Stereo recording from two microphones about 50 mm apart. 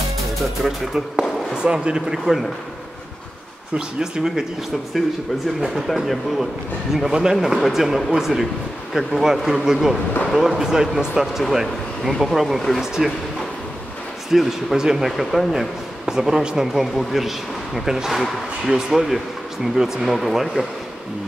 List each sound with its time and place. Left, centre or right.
0.4 s speech: centre
1.5 s speech: centre
3.7 s speech: centre
5.6 s speech: centre
14.3 s speech: centre
16.1 s speech: centre